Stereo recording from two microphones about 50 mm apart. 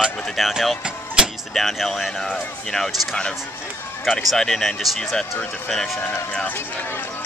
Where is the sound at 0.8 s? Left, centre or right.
Centre.